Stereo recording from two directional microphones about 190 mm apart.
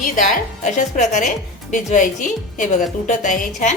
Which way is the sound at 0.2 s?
40° left (ahead or behind).